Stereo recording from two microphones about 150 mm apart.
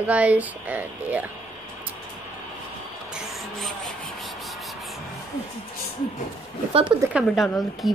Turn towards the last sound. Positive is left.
turn(degrees=0)  # may be behind; listen again after turning